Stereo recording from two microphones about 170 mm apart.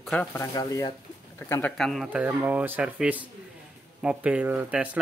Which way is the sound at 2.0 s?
10° right (ahead or behind).